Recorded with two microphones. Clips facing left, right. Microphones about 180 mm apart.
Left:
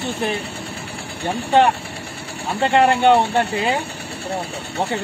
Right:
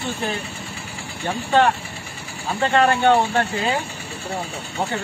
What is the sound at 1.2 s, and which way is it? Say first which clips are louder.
Speech: left 2 dB; 15° left (ahead or behind).